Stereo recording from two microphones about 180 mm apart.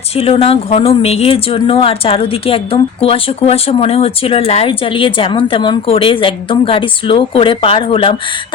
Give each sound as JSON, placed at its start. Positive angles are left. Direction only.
{"t": 0.2, "sound": "speech", "side_deg": 35}